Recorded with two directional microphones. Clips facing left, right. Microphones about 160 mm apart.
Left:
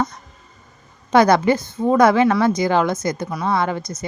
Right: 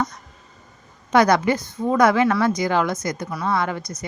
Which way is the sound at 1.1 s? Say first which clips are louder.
Left 3 dB; 30° left (ahead or behind).